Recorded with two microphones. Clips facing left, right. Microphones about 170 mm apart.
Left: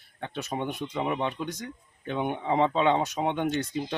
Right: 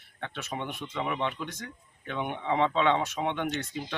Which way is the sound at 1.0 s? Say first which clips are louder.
Left 2 dB; 30° left (ahead or behind).